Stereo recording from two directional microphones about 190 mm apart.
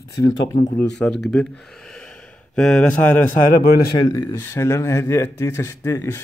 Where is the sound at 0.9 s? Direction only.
5° left (ahead or behind).